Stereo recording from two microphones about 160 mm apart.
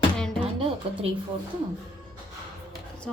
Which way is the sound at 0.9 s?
35° right (ahead or behind).